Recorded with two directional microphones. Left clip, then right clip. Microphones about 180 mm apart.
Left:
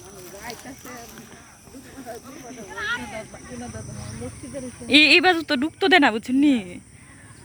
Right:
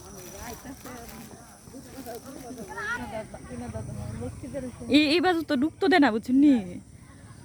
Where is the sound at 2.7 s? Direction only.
30° right (ahead or behind).